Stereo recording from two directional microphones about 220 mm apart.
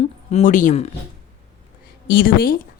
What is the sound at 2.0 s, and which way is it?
Speech, 40° left (ahead or behind).